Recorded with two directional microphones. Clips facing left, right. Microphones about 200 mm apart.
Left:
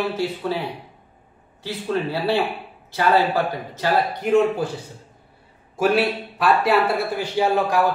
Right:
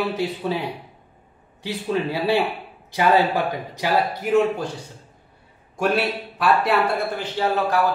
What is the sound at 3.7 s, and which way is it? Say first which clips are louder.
Speech: left 1 dB; 5° right (ahead or behind).